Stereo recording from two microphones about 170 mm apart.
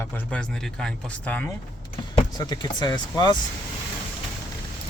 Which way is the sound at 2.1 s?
25° left (ahead or behind).